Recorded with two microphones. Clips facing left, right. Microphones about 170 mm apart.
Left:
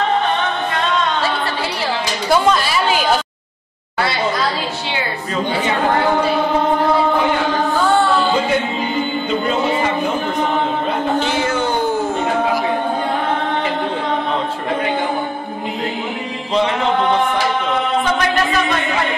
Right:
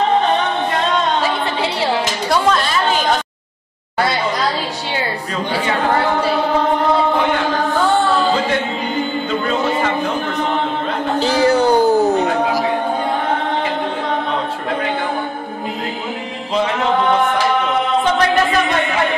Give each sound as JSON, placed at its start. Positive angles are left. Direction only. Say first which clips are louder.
{"t": 1.2, "sound": "music", "louder": "right 2 dB", "side_deg": -20}
{"t": 2.2, "sound": "chatter", "louder": "left 2 dB", "side_deg": 0}
{"t": 11.1, "sound": "a sound", "louder": "right 4 dB", "side_deg": -35}